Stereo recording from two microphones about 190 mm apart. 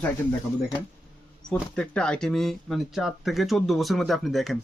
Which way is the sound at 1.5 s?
5° left (ahead or behind).